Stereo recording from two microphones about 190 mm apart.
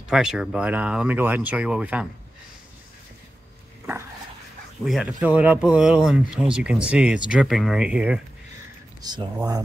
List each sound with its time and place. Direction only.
0.1 s speech: 5° right (ahead or behind)
4.8 s speech: 5° right (ahead or behind)
9.0 s speech: 20° right (ahead or behind)